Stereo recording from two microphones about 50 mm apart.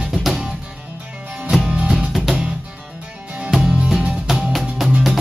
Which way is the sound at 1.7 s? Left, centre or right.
Right.